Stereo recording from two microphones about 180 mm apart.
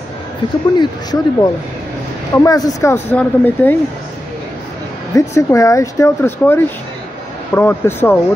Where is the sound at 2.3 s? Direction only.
20° left (ahead or behind).